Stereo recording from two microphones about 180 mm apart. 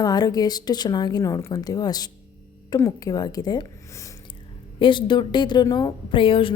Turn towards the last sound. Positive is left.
turn(degrees=30)  # may be behind; listen again after turning